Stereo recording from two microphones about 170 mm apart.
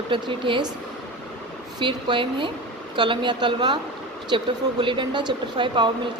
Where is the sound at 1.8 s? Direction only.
30° right (ahead or behind).